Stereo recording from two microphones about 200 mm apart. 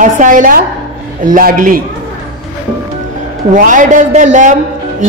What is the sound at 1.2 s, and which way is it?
Speech, 45° right (ahead or behind).